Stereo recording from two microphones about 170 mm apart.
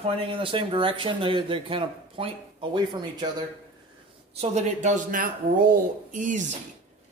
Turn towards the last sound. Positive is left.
turn(degrees=-45)  # may be behind; listen again after turning